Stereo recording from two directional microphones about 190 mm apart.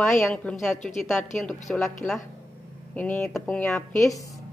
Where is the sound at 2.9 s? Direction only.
10° left (ahead or behind).